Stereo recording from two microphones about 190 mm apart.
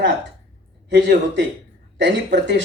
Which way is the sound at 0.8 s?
65° right (ahead or behind).